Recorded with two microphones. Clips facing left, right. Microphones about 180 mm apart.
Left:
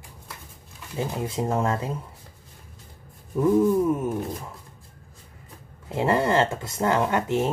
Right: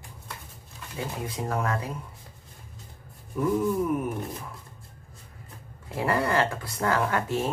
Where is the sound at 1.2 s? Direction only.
25° left (ahead or behind).